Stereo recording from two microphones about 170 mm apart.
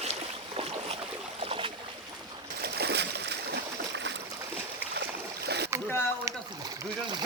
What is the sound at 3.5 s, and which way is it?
Stream, 90° right.